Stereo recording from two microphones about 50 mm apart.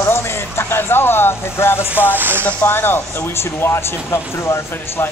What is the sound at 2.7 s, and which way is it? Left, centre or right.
Speech, left.